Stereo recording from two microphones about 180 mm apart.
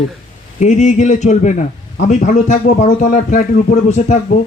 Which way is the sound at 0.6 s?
40° left (ahead or behind).